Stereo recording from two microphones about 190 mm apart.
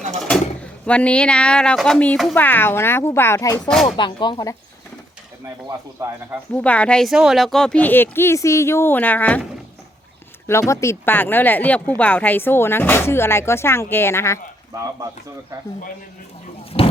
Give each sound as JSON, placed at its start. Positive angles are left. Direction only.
{"t": 0.3, "sound": "speech", "side_deg": 5}
{"t": 5.6, "sound": "speech", "side_deg": -15}
{"t": 6.6, "sound": "speech", "side_deg": 5}
{"t": 10.4, "sound": "speech", "side_deg": 15}
{"t": 16.7, "sound": "speech", "side_deg": 30}